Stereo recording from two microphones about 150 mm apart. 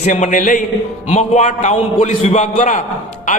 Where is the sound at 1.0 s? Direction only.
50° left (ahead or behind).